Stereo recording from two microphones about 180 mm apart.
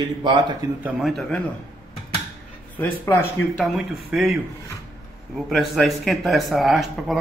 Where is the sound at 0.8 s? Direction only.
5° right (ahead or behind).